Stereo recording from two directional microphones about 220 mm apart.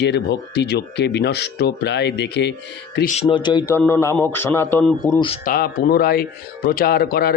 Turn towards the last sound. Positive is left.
turn(degrees=45)  # may be behind; listen again after turning